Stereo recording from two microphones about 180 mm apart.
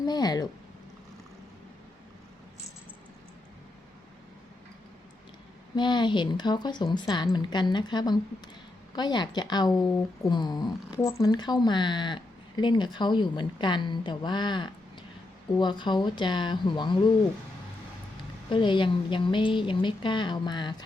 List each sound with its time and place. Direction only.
0.0 s speech: 20° left (ahead or behind)
5.7 s speech: 25° left (ahead or behind)
18.4 s speech: 25° left (ahead or behind)